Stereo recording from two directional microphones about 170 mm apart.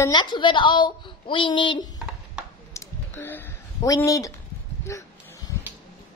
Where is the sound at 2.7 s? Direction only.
10° left (ahead or behind).